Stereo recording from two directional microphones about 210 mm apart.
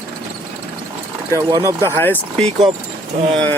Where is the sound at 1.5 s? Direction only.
20° right (ahead or behind).